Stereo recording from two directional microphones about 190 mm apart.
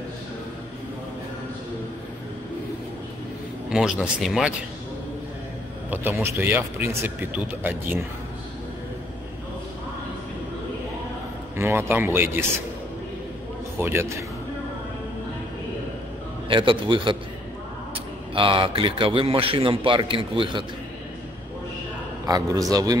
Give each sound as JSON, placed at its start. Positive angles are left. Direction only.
{"t": 3.7, "sound": "speech", "side_deg": -5}
{"t": 5.9, "sound": "speech", "side_deg": -10}
{"t": 11.5, "sound": "speech", "side_deg": -15}
{"t": 13.7, "sound": "a man's voice", "side_deg": -10}
{"t": 16.4, "sound": "a man's voice", "side_deg": -25}
{"t": 22.2, "sound": "a man's voice", "side_deg": -20}